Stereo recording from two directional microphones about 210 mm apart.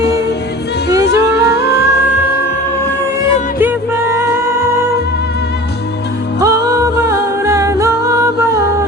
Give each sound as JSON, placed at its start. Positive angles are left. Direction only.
{"t": 1.2, "sound": "music", "side_deg": 50}
{"t": 4.1, "sound": "music", "side_deg": -15}
{"t": 6.4, "sound": "music", "side_deg": -15}